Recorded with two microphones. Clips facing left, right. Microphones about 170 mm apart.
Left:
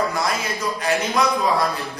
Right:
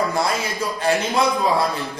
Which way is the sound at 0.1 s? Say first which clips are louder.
Right 2 dB; 30° right (ahead or behind).